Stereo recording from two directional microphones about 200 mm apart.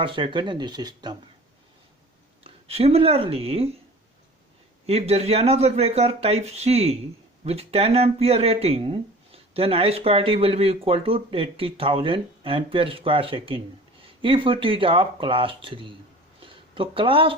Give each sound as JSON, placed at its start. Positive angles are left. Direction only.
{"t": 0.0, "sound": "speech", "side_deg": -25}
{"t": 2.4, "sound": "speech", "side_deg": -30}
{"t": 4.9, "sound": "speech", "side_deg": -30}